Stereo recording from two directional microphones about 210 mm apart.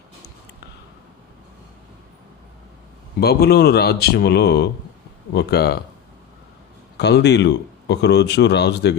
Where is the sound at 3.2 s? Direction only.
50° left (ahead or behind).